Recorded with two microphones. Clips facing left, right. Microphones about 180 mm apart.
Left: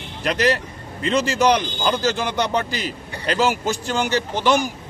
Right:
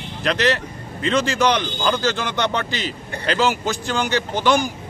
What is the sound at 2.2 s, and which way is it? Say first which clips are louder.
Speech: left 1 dB; 35° left (ahead or behind).